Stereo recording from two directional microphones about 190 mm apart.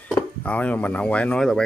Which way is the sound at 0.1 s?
5° left (ahead or behind).